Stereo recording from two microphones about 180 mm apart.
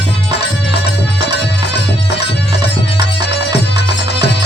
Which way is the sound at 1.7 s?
70° left (ahead or behind).